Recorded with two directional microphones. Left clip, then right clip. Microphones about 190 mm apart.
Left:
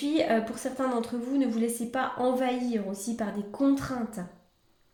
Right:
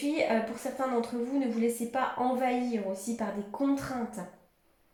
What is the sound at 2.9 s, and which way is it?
Speech, 50° left (ahead or behind).